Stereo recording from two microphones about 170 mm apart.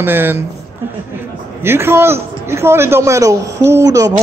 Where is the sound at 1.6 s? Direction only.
15° right (ahead or behind).